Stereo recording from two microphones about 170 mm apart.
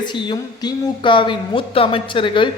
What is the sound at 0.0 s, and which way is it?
A man's voice, 25° left (ahead or behind).